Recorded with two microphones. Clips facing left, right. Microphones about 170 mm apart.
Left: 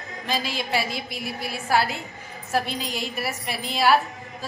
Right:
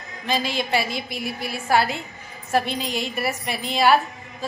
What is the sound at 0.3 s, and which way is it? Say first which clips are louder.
A woman's voice: right 3 dB; centre (ahead or behind).